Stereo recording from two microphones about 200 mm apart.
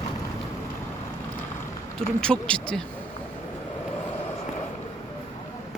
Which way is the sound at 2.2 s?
5° left (ahead or behind).